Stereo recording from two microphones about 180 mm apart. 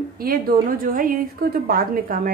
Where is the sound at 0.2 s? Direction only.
55° right (ahead or behind).